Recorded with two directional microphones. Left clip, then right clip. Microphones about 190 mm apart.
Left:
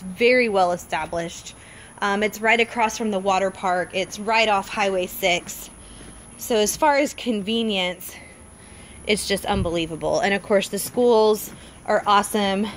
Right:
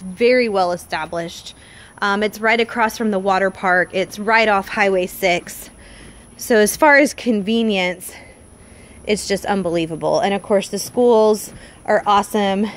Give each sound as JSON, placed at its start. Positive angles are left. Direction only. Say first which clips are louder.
{"t": 0.2, "sound": "a woman's voice", "louder": "right 2 dB", "side_deg": -20}
{"t": 6.5, "sound": "speech", "louder": "right 7 dB", "side_deg": -50}
{"t": 7.2, "sound": "a woman's voice", "louder": "right 5 dB", "side_deg": -35}
{"t": 9.0, "sound": "speech", "louder": "right 3 dB", "side_deg": -20}